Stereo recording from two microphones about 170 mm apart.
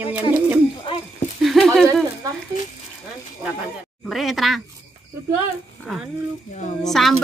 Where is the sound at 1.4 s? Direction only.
Centre (ahead or behind).